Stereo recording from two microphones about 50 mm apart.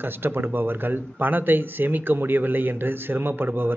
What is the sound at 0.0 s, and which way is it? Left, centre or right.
Speech, right.